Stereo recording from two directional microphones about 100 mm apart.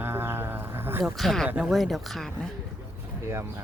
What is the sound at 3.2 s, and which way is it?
Speech, 25° right (ahead or behind).